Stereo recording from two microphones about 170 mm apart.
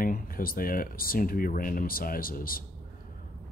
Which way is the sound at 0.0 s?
55° left (ahead or behind).